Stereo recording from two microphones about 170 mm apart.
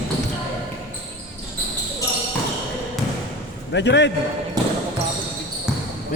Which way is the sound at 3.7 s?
90° left.